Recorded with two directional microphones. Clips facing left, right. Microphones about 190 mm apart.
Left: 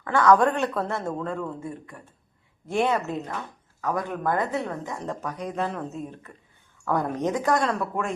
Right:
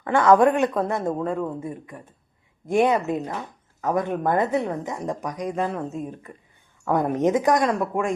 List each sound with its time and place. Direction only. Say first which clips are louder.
0.0 s a woman's voice: right 3 dB; 25° right (ahead or behind); by 6.3 s 10° right (ahead or behind)
6.8 s a woman's voice: right 5 dB; 20° right (ahead or behind)